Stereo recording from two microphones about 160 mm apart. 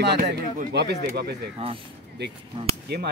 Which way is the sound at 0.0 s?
75° right (ahead or behind).